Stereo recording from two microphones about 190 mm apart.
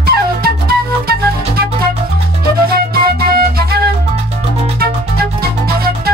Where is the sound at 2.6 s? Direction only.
50° right (ahead or behind).